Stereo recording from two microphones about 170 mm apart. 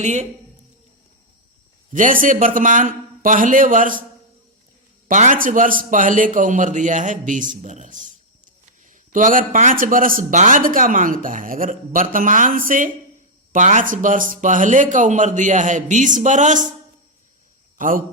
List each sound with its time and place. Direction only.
0.0 s a man's voice: 45° right (ahead or behind)
1.9 s a man's voice: 50° right (ahead or behind)
5.0 s a man's voice: 50° right (ahead or behind)
17.7 s a man's voice: 55° right (ahead or behind)